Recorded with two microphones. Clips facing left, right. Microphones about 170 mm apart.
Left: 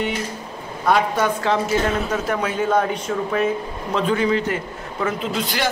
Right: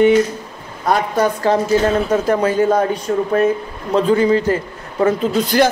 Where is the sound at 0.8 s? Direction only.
40° right (ahead or behind).